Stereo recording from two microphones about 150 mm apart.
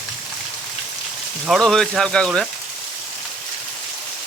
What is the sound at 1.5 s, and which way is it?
Speech, centre (ahead or behind).